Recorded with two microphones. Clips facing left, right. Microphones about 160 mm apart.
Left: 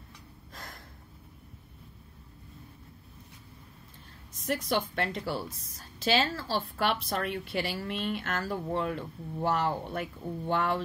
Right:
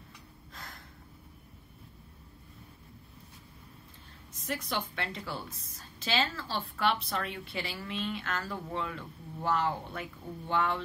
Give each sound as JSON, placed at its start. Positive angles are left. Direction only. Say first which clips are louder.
{"t": 4.5, "sound": "speech", "louder": "left 5 dB", "side_deg": 45}